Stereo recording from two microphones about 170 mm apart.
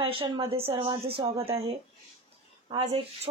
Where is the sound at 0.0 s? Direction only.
30° right (ahead or behind).